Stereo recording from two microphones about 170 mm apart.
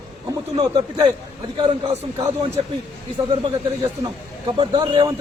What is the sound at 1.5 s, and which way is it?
A man's voice, 30° right (ahead or behind).